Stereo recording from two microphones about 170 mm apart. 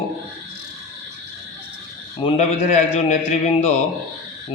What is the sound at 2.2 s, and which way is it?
Speech, 30° left (ahead or behind).